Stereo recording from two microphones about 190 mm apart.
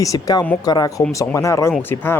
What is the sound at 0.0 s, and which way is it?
Speech, 20° left (ahead or behind).